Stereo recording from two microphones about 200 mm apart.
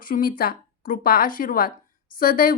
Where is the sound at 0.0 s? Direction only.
45° left (ahead or behind).